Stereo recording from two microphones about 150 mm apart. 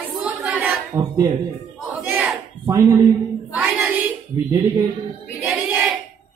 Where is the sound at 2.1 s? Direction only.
10° right (ahead or behind).